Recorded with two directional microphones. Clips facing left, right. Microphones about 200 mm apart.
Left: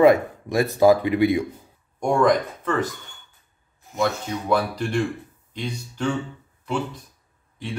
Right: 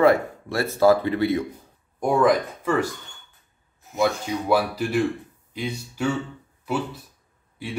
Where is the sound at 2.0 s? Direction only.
5° right (ahead or behind).